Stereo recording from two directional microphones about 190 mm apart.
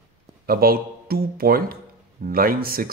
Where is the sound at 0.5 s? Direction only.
55° right (ahead or behind).